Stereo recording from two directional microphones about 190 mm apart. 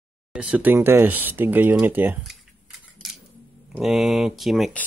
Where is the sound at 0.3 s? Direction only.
5° right (ahead or behind).